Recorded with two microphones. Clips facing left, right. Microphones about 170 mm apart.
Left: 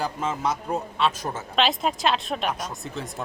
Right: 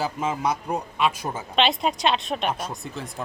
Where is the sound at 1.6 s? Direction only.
Centre (ahead or behind).